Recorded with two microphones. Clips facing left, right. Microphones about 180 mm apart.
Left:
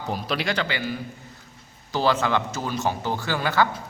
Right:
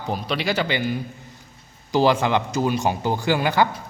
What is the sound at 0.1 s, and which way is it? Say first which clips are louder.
Speech: right 2 dB; centre (ahead or behind).